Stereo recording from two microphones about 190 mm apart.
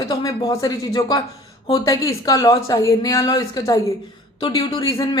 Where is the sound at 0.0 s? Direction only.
20° left (ahead or behind).